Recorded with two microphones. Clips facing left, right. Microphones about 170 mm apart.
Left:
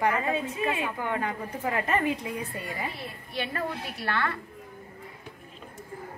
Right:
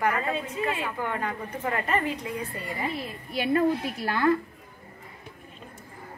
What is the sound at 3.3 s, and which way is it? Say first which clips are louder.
Speech: right 8 dB; 10° right (ahead or behind).